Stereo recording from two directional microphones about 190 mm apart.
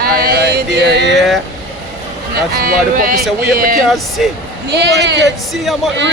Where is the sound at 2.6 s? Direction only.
50° right (ahead or behind).